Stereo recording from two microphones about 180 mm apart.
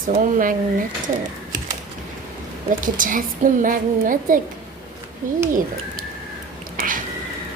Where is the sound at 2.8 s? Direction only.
50° right (ahead or behind).